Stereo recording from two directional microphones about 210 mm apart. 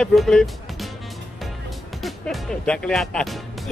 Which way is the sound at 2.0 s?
Centre (ahead or behind).